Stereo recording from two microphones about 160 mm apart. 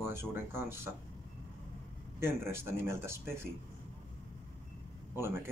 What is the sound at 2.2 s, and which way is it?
Speech, 15° right (ahead or behind).